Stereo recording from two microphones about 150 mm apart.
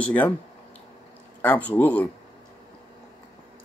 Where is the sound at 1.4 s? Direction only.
10° left (ahead or behind).